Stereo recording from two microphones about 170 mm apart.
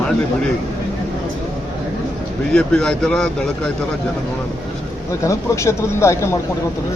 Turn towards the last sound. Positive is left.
turn(degrees=15)  # may be behind; listen again after turning